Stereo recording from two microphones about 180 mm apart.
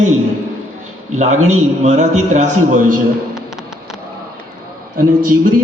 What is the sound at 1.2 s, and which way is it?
A man's voice, 40° right (ahead or behind).